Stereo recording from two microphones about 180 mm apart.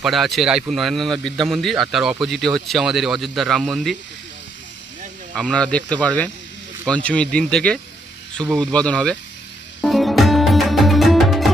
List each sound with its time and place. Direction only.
0.0 s speech: centre (ahead or behind)
5.3 s speech: 5° left (ahead or behind)
9.8 s music: centre (ahead or behind)